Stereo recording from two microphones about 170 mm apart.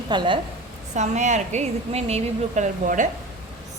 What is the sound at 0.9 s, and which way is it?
A woman's voice, 45° right (ahead or behind).